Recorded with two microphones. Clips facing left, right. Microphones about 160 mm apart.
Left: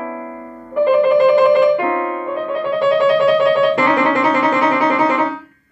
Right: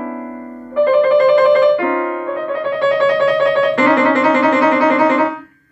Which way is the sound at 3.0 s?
10° left (ahead or behind).